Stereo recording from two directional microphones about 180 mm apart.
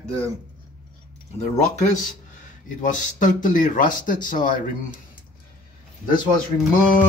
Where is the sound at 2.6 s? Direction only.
45° left (ahead or behind).